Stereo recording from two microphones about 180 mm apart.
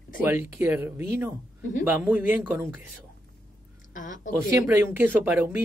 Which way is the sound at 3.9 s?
45° left (ahead or behind).